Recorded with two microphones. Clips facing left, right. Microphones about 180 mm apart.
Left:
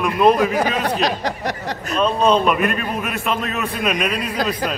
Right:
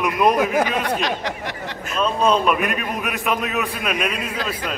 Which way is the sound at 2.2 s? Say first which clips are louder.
Left 1 dB; 5° right (ahead or behind).